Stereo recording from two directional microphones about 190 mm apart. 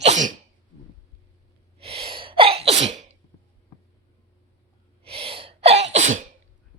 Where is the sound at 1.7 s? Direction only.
30° right (ahead or behind).